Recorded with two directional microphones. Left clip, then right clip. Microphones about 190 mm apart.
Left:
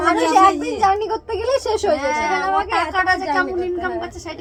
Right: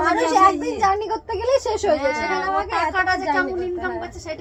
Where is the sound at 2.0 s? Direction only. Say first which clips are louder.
Left 2 dB; 30° left (ahead or behind).